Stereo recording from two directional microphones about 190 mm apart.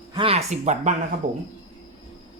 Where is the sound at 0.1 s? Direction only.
30° right (ahead or behind).